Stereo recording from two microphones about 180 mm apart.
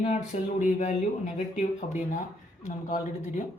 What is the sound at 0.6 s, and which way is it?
A man's voice, 40° left (ahead or behind).